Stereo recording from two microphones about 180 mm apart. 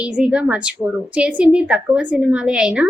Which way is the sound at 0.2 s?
5° right (ahead or behind).